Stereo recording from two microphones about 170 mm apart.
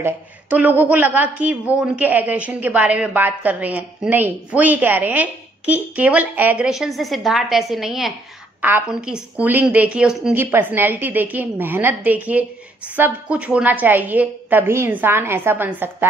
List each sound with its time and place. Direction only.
0.0 s a woman's voice: 10° right (ahead or behind)